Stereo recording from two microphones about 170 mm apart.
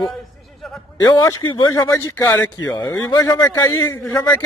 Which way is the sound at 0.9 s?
25° left (ahead or behind).